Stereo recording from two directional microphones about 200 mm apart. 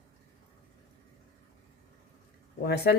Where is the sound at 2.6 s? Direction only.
55° left (ahead or behind).